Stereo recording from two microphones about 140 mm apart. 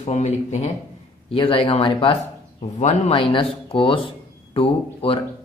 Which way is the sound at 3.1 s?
40° left (ahead or behind).